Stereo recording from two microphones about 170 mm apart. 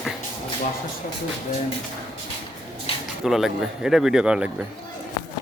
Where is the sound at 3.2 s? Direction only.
5° right (ahead or behind).